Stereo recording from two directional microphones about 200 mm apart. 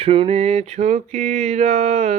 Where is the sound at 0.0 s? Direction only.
30° right (ahead or behind).